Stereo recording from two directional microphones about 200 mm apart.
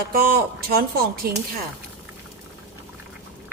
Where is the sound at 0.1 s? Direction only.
50° right (ahead or behind).